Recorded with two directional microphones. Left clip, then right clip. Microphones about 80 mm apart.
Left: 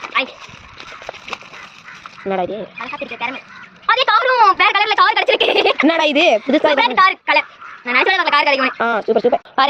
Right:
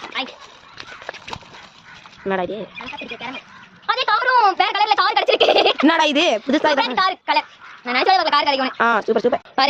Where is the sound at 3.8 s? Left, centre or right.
Centre.